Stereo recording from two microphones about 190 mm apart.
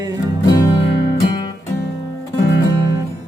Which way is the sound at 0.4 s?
20° left (ahead or behind).